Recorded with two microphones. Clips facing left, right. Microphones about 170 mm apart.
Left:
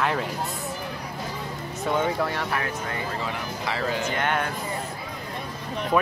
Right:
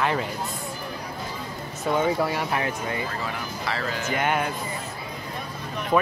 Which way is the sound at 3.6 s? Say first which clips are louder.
Left 3 dB; 15° left (ahead or behind).